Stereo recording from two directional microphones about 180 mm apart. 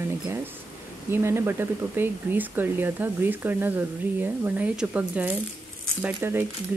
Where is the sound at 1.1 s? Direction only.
15° right (ahead or behind).